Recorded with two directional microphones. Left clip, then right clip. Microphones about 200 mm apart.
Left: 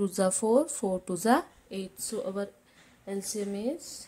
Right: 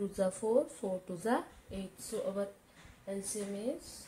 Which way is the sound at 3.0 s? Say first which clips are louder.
Left 6 dB; 55° left (ahead or behind).